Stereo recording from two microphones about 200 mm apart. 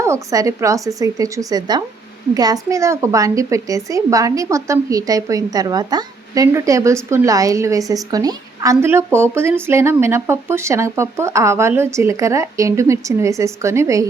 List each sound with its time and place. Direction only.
0.0 s speech: 15° right (ahead or behind)